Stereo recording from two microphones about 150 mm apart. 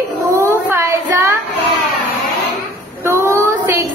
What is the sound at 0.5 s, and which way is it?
Child singing, 20° right (ahead or behind).